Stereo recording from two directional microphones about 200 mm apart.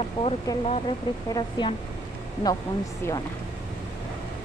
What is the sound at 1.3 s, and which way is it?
Speech, 20° left (ahead or behind).